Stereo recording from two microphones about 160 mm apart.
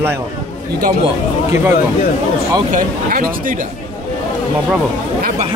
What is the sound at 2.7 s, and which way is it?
Speech, 60° right (ahead or behind).